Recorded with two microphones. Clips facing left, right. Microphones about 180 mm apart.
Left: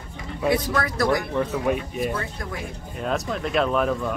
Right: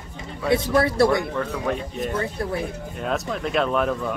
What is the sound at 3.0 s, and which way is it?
Speech, centre (ahead or behind).